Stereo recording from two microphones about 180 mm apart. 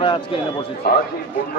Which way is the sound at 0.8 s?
60° left (ahead or behind).